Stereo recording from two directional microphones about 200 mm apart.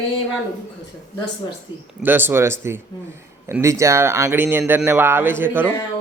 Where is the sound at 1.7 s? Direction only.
25° left (ahead or behind).